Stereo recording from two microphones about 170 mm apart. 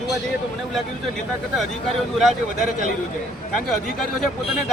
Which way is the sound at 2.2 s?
Centre (ahead or behind).